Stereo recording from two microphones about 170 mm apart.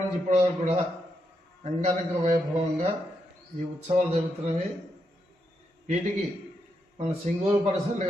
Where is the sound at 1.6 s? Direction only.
45° right (ahead or behind).